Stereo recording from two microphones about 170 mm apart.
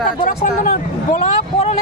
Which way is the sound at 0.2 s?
55° left (ahead or behind).